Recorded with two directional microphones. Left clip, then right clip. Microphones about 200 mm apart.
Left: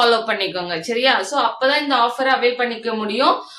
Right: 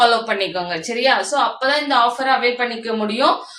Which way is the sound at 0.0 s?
20° left (ahead or behind).